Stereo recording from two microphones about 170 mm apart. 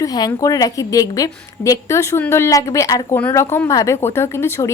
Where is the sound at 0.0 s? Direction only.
20° left (ahead or behind).